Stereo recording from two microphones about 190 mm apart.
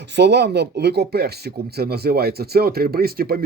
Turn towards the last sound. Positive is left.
turn(degrees=-50)  # may be behind; listen again after turning